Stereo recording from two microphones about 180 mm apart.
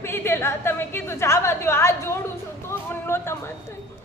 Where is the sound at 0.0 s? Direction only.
15° left (ahead or behind).